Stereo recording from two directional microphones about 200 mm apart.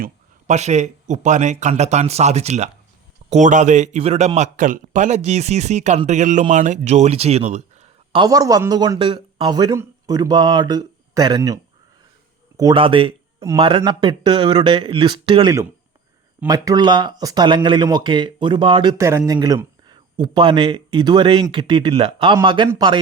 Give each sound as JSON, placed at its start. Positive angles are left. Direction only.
{"t": 0.0, "sound": "a man's voice", "side_deg": -35}
{"t": 8.2, "sound": "speech", "side_deg": -20}